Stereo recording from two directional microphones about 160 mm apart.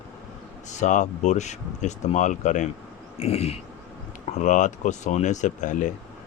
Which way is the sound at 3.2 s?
40° left (ahead or behind).